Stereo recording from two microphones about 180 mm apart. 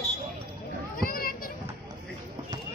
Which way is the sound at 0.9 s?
55° left (ahead or behind).